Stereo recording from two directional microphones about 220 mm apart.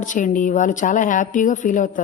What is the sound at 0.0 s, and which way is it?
A woman's voice, 35° left (ahead or behind).